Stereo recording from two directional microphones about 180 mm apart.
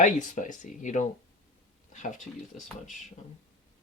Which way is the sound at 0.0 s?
45° left (ahead or behind).